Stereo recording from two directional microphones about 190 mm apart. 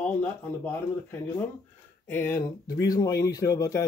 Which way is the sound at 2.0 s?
10° left (ahead or behind).